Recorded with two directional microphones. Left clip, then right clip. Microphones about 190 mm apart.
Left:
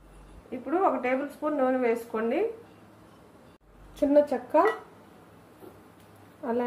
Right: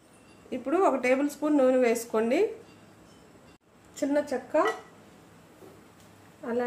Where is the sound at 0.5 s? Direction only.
70° right (ahead or behind).